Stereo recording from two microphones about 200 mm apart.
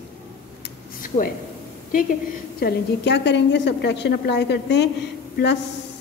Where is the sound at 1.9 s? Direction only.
45° left (ahead or behind).